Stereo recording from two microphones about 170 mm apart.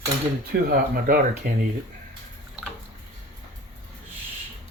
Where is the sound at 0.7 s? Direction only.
60° right (ahead or behind).